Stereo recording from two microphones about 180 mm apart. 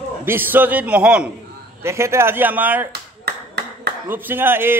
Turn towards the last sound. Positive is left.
turn(degrees=-10)  # may be behind; listen again after turning